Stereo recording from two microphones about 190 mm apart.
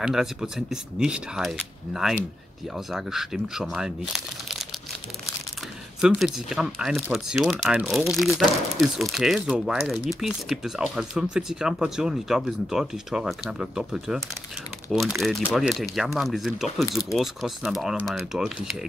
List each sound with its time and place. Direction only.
0.0 s speech: centre (ahead or behind)
5.9 s speech: 5° right (ahead or behind)